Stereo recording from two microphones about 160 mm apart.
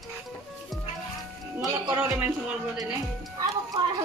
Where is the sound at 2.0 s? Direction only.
10° right (ahead or behind).